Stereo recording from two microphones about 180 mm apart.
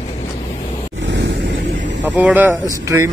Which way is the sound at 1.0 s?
75° right (ahead or behind).